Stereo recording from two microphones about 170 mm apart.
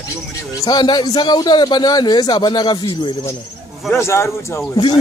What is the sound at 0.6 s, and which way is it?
A man's voice, 25° left (ahead or behind).